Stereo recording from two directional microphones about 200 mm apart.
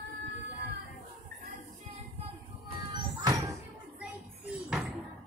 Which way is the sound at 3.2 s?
15° right (ahead or behind).